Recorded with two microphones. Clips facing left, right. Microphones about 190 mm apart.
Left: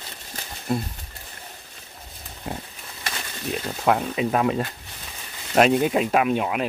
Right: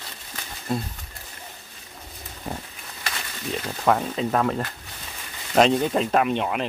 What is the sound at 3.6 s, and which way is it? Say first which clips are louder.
Speech: even; 5° left (ahead or behind).